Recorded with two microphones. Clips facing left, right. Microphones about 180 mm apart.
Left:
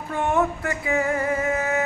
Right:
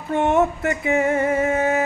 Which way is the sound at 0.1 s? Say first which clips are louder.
Right 4 dB; 25° right (ahead or behind).